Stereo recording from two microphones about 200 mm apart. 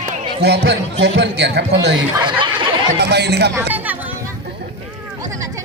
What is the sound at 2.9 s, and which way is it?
Speech, 55° right (ahead or behind).